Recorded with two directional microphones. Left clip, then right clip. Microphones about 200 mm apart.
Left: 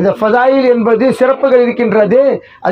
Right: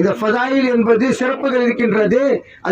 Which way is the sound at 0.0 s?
35° left (ahead or behind).